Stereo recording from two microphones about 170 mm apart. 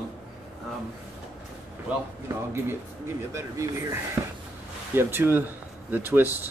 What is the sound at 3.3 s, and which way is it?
Speech, 15° right (ahead or behind).